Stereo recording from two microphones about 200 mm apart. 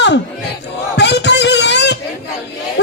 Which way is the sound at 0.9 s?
60° left (ahead or behind).